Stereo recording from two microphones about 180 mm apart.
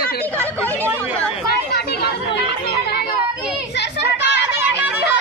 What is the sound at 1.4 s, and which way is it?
Speech, 60° left (ahead or behind).